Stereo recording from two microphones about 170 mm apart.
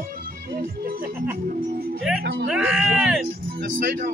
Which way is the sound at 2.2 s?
80° right.